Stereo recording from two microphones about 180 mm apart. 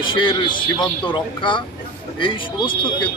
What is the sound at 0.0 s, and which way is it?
Speech, 25° left (ahead or behind).